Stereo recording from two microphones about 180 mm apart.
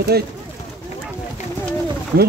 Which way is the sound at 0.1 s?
60° right (ahead or behind).